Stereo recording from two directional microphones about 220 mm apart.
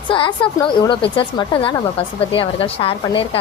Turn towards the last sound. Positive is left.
turn(degrees=25)  # may be behind; listen again after turning